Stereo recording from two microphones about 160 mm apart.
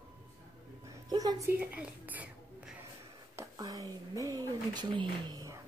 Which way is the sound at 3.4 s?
20° right (ahead or behind).